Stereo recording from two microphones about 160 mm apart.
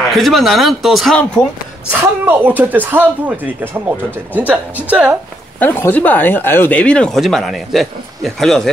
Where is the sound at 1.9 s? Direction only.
10° right (ahead or behind).